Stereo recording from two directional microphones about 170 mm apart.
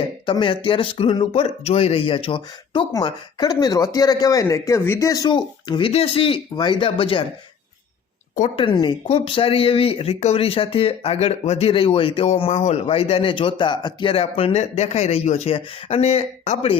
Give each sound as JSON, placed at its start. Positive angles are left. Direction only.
{"t": 0.3, "sound": "speech", "side_deg": 30}
{"t": 8.5, "sound": "speech", "side_deg": 30}